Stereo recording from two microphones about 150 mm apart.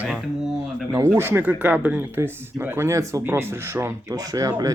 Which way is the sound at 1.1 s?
15° right (ahead or behind).